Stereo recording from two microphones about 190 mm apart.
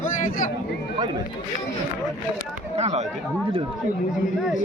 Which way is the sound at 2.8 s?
35° right (ahead or behind).